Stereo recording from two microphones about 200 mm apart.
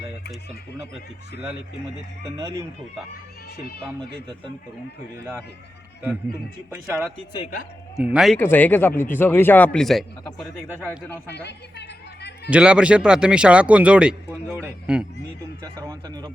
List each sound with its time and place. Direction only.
2.4 s speech: 15° right (ahead or behind)
5.1 s speech: 15° right (ahead or behind)
6.7 s speech: 10° right (ahead or behind)
8.4 s speech: 10° left (ahead or behind)
11.4 s speech: 60° left (ahead or behind)
12.5 s speech: 5° right (ahead or behind)
15.6 s speech: 20° right (ahead or behind)